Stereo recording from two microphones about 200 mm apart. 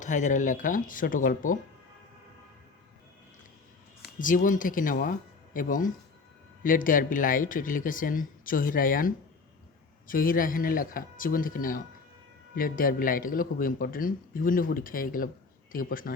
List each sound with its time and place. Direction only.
0.0 s speech: 40° left (ahead or behind)
4.2 s a man's voice: 40° left (ahead or behind)